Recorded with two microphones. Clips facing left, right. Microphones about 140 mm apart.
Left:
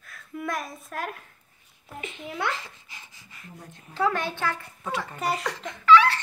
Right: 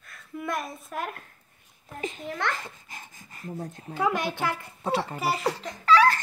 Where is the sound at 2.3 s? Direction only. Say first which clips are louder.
Left 1 dB; 10° left (ahead or behind).